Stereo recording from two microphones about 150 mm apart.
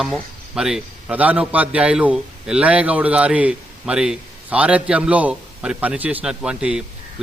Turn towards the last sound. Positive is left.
turn(degrees=-5)  # may be behind; listen again after turning